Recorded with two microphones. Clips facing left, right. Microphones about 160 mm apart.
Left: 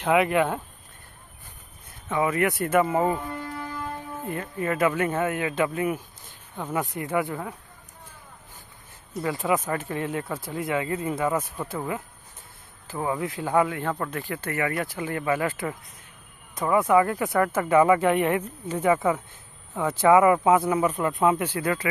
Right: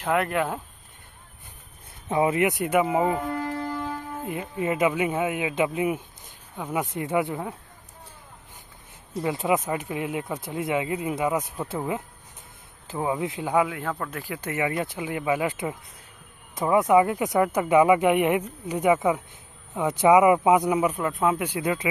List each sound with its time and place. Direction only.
0.0 s speech: centre (ahead or behind)
2.0 s speech: 30° right (ahead or behind); by 3.2 s 10° right (ahead or behind)
4.3 s speech: 15° right (ahead or behind)
6.5 s speech: 5° right (ahead or behind)
6.8 s speech: 20° right (ahead or behind)
9.1 s speech: 20° right (ahead or behind)
21.0 s speech: centre (ahead or behind)
21.5 s speech: 15° right (ahead or behind)